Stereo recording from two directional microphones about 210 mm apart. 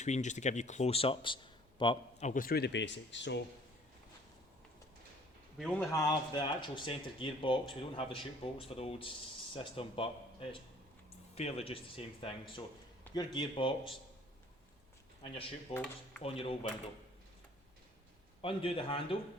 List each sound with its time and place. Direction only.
0.0 s a man's voice: 35° left (ahead or behind); by 3.4 s 55° left (ahead or behind)
5.5 s speech: centre (ahead or behind)
5.9 s speech: 15° left (ahead or behind)
15.2 s speech: 25° left (ahead or behind)
15.7 s dishes: 5° left (ahead or behind)
16.2 s speech: 25° left (ahead or behind)
18.4 s speech: 25° left (ahead or behind)